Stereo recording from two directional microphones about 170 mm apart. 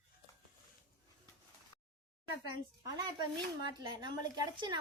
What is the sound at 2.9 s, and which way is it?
A woman's voice, 25° right (ahead or behind).